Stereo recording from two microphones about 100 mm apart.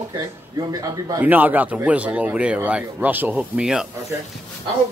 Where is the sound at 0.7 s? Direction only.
35° right (ahead or behind).